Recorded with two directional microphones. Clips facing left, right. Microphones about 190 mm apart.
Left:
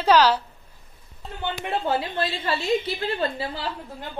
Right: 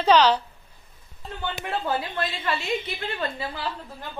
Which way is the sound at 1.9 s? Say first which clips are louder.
Left 3 dB; 30° left (ahead or behind).